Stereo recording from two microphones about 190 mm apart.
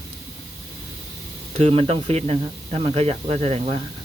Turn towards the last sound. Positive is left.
turn(degrees=-35)  # may be behind; listen again after turning